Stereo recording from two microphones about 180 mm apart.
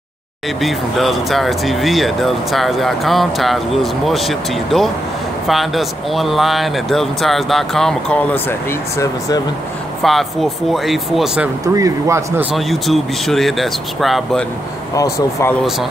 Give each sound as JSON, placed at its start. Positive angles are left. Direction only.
{"t": 0.6, "sound": "speech", "side_deg": 0}
{"t": 10.0, "sound": "speech", "side_deg": 0}
{"t": 11.6, "sound": "speech", "side_deg": -20}
{"t": 12.5, "sound": "speech", "side_deg": 0}